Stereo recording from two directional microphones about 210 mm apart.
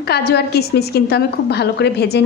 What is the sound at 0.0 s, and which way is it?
A woman's voice, 50° left (ahead or behind).